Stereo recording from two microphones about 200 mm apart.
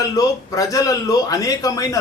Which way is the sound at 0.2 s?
15° left (ahead or behind).